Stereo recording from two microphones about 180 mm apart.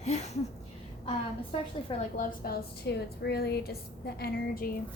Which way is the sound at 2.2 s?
55° left (ahead or behind).